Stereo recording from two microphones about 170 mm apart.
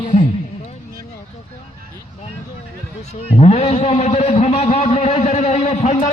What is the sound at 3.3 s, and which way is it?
A man's voice, 40° left (ahead or behind).